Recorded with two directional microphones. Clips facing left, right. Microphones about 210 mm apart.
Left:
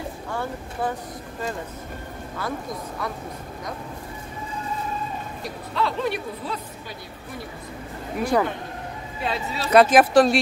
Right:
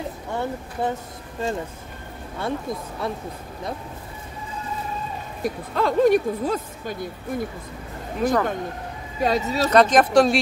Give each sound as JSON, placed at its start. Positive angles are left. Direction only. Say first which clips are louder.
{"t": 0.3, "sound": "speech", "louder": "right 3 dB", "side_deg": -20}
{"t": 3.0, "sound": "speech", "louder": "right 4 dB", "side_deg": -25}
{"t": 5.4, "sound": "speech", "louder": "right 4 dB", "side_deg": -45}
{"t": 8.2, "sound": "speech", "louder": "right 1 dB", "side_deg": 10}
{"t": 9.2, "sound": "speech", "louder": "right 7 dB", "side_deg": -40}
{"t": 9.7, "sound": "speech", "louder": "left 2 dB", "side_deg": 5}